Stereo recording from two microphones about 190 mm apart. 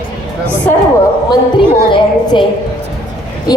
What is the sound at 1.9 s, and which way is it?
Speech, 25° left (ahead or behind).